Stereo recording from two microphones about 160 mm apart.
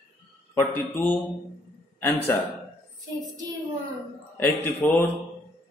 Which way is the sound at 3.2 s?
25° right (ahead or behind).